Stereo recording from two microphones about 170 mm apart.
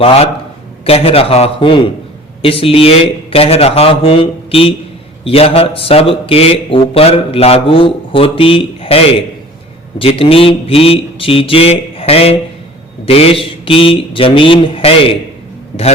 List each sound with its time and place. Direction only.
0.9 s speech: 35° left (ahead or behind)
15.7 s a man's voice: 50° left (ahead or behind)